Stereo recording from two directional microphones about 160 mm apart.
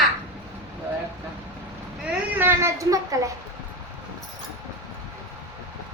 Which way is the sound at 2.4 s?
15° right (ahead or behind).